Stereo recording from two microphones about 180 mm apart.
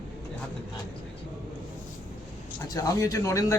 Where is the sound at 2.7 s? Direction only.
20° left (ahead or behind).